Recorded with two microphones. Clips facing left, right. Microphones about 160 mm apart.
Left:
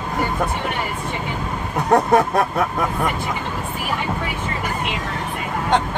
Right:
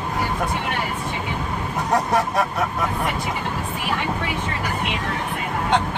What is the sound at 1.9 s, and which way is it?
Speech, 55° left (ahead or behind).